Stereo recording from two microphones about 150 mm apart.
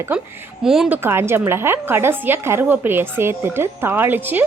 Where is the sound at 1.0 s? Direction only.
15° right (ahead or behind).